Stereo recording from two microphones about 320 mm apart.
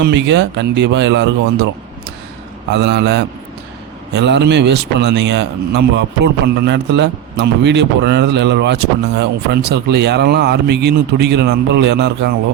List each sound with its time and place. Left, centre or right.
0.0 s a man's voice: right
2.7 s a man's voice: right